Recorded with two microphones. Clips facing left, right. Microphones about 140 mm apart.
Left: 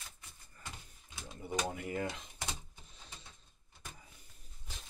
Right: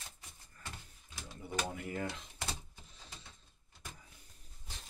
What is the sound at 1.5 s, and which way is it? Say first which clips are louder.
Speech: left 2 dB; 15° left (ahead or behind).